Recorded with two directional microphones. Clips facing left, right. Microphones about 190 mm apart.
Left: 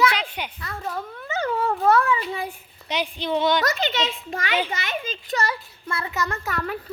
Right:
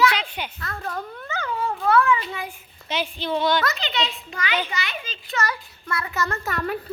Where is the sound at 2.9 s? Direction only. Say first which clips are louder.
Left 1 dB; 15° left (ahead or behind).